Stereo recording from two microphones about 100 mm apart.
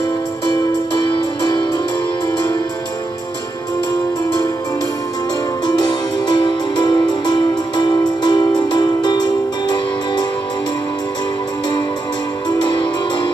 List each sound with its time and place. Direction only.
5.7 s music: 45° left (ahead or behind)
12.4 s music: 50° left (ahead or behind)